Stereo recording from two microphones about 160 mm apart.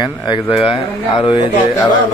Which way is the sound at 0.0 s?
30° left (ahead or behind).